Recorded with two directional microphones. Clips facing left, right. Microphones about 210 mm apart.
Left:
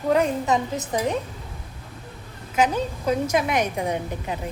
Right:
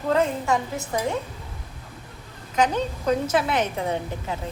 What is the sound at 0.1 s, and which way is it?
A woman's voice, 15° left (ahead or behind).